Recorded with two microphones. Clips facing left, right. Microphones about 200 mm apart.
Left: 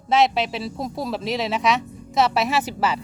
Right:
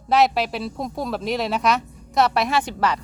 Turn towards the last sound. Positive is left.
turn(degrees=5)  # may be behind; listen again after turning